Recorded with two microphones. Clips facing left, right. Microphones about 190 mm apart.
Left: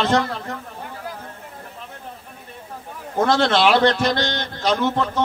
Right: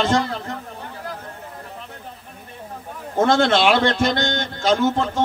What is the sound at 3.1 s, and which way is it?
A man's voice, 50° right (ahead or behind).